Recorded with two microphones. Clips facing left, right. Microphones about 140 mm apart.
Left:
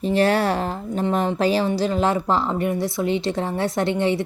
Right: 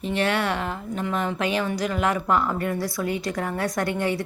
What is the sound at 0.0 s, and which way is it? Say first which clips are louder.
A woman's voice: left 5 dB; 35° left (ahead or behind).